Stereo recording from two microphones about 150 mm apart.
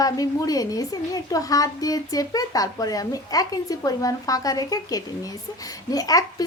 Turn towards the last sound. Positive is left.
turn(degrees=25)  # may be behind; listen again after turning